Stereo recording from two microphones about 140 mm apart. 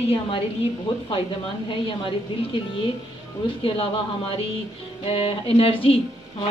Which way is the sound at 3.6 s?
45° left (ahead or behind).